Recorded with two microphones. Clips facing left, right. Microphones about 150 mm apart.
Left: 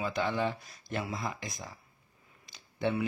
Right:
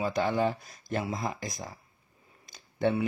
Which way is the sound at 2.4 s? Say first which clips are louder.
Right 4 dB; 45° right (ahead or behind).